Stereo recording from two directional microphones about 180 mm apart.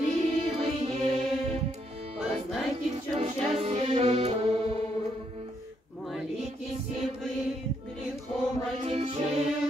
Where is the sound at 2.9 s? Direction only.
35° right (ahead or behind).